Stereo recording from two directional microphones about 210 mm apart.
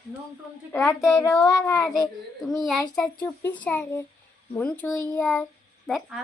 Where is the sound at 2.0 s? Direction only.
Centre (ahead or behind).